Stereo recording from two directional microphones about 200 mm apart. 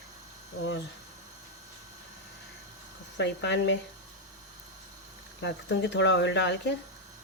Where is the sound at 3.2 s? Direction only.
65° left (ahead or behind).